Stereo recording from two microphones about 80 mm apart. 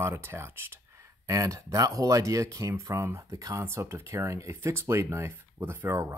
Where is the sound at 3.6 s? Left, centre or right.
Right.